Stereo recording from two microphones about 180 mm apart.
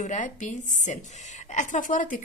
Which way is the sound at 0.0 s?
45° left (ahead or behind).